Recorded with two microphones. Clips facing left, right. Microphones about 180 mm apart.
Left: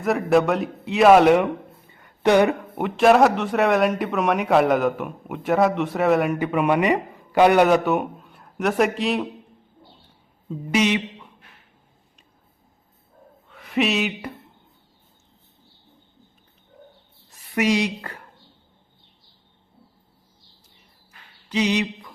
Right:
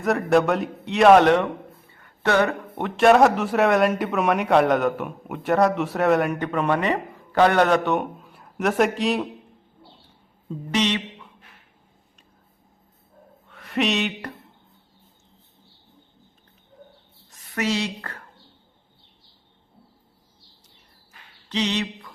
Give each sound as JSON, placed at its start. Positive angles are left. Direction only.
{"t": 0.0, "sound": "speech", "side_deg": 0}
{"t": 1.9, "sound": "a sound", "side_deg": 15}
{"t": 2.8, "sound": "speech", "side_deg": 0}
{"t": 10.5, "sound": "speech", "side_deg": 10}
{"t": 13.5, "sound": "speech", "side_deg": 0}
{"t": 17.5, "sound": "a woman's voice", "side_deg": 15}
{"t": 21.5, "sound": "a sound", "side_deg": 10}